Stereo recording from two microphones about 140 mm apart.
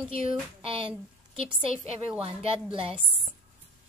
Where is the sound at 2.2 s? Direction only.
45° right (ahead or behind).